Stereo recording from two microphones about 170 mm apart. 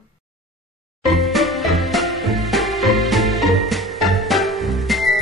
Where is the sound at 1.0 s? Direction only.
Centre (ahead or behind).